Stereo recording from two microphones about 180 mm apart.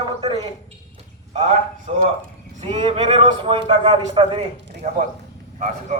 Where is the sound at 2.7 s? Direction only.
30° right (ahead or behind).